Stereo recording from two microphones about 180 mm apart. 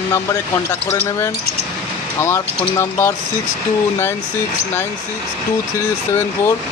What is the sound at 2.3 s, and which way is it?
Speech, 15° left (ahead or behind).